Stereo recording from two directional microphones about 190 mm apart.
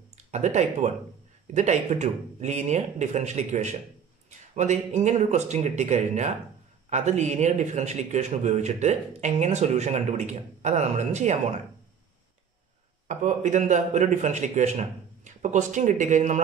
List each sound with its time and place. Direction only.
0.3 s a man's voice: 35° right (ahead or behind)
13.1 s a man's voice: 40° right (ahead or behind)